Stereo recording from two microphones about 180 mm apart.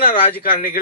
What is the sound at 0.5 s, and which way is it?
Speech, 50° left (ahead or behind).